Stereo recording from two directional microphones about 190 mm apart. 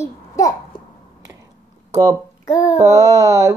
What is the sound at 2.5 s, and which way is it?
Speech, 15° left (ahead or behind).